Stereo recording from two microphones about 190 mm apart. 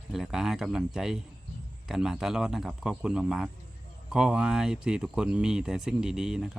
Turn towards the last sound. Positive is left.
turn(degrees=-5)  # may be behind; listen again after turning